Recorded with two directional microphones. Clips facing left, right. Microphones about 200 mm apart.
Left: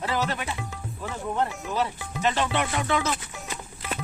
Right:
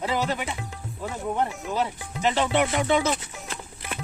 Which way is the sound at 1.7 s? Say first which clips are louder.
Even; 20° right (ahead or behind).